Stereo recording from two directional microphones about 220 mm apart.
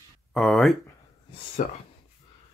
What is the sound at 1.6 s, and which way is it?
Speech, 35° left (ahead or behind).